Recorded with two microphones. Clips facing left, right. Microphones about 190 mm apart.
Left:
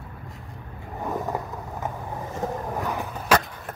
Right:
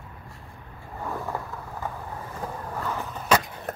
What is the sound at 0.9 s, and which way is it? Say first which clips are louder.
Vehicle: left 3 dB; 20° left (ahead or behind).